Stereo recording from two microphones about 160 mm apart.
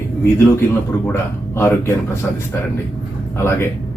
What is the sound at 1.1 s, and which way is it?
Speech, 15° left (ahead or behind).